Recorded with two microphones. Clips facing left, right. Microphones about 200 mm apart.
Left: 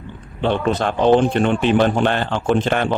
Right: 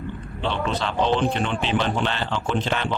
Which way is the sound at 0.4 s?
50° left (ahead or behind).